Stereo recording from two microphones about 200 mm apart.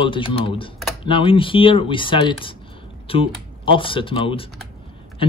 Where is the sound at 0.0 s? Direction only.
25° left (ahead or behind).